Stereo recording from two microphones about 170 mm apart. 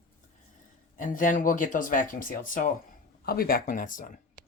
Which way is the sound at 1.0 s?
50° left (ahead or behind).